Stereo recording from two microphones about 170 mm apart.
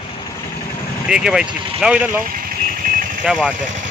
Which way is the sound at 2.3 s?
55° right (ahead or behind).